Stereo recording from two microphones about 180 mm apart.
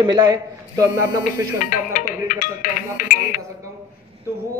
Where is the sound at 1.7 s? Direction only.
50° left (ahead or behind).